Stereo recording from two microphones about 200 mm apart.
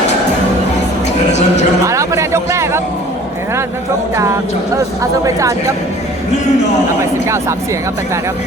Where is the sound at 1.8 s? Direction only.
15° right (ahead or behind).